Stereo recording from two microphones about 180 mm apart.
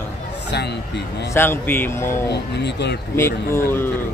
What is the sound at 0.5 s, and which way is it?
Speech, 70° left (ahead or behind).